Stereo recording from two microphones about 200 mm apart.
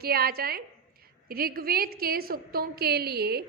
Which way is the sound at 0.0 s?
50° right (ahead or behind).